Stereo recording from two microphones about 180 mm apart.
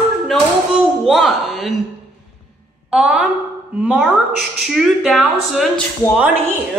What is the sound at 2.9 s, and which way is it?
A woman's voice, 5° right (ahead or behind).